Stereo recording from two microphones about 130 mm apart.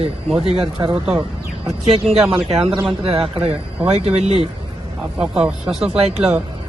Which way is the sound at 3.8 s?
50° right (ahead or behind).